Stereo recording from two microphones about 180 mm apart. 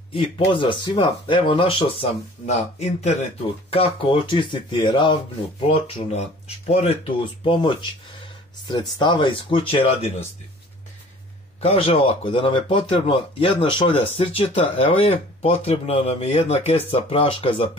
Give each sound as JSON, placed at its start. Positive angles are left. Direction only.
{"t": 0.1, "sound": "speech", "side_deg": 30}
{"t": 11.6, "sound": "speech", "side_deg": 35}